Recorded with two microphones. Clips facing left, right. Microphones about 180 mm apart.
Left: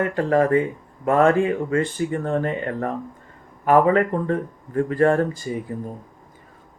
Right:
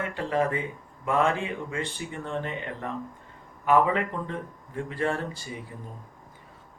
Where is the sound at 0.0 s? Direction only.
45° left (ahead or behind).